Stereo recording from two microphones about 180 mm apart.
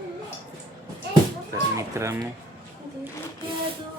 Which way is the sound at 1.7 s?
15° right (ahead or behind).